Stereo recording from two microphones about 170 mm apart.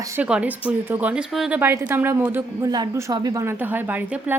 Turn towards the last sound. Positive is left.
turn(degrees=-10)  # may be behind; listen again after turning